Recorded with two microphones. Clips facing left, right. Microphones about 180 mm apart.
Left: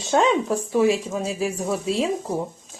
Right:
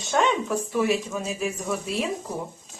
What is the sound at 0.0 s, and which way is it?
Speech, 30° left (ahead or behind).